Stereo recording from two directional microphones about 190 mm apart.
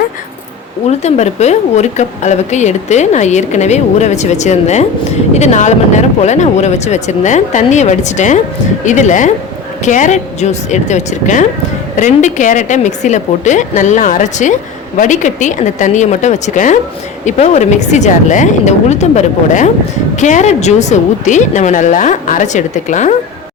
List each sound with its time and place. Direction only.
0.9 s a woman's voice: 35° left (ahead or behind)